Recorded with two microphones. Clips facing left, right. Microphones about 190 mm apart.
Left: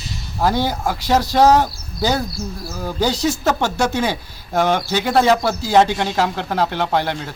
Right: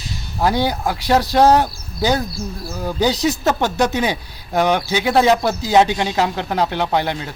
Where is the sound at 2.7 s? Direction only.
15° right (ahead or behind).